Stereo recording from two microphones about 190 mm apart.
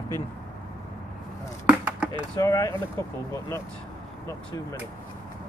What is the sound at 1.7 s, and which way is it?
Chop, 5° right (ahead or behind).